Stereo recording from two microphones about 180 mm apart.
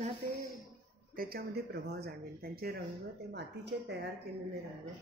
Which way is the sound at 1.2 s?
55° right (ahead or behind).